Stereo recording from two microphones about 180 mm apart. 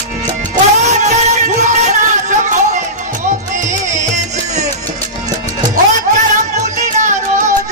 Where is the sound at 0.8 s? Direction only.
40° right (ahead or behind).